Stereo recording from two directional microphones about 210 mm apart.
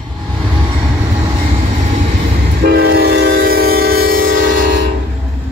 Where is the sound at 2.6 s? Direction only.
50° right (ahead or behind).